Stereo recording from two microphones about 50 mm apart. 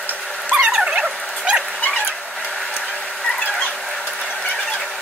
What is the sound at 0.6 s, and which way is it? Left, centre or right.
Dog, centre.